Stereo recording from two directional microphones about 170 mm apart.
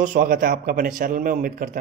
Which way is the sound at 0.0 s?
50° right (ahead or behind).